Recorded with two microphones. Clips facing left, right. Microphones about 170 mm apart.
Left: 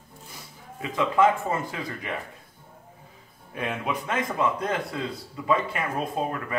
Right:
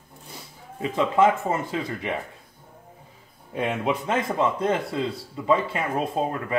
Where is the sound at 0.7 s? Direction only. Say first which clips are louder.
Right 2 dB; 25° right (ahead or behind).